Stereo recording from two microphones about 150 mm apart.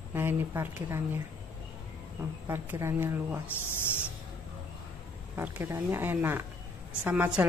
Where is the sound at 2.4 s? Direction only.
15° right (ahead or behind).